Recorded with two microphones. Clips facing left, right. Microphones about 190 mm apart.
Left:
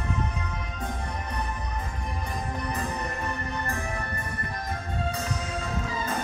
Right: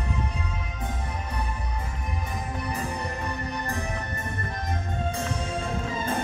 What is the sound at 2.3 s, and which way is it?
Music, 5° right (ahead or behind).